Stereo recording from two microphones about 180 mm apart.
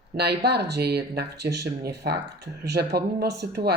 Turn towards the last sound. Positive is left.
turn(degrees=-65)  # may be behind; listen again after turning